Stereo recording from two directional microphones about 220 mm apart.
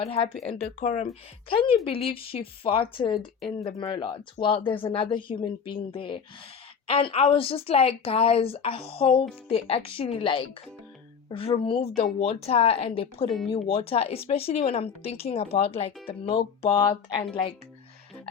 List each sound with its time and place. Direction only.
0.0 s speech: 30° left (ahead or behind)
1.0 s speech: 25° left (ahead or behind)